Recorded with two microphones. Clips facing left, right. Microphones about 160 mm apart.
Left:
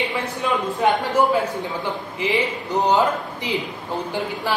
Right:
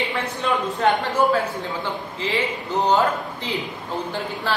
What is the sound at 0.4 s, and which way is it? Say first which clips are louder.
Speech: even; 10° left (ahead or behind).